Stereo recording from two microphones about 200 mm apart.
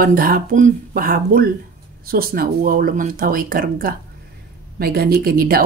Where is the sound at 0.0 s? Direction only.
45° right (ahead or behind).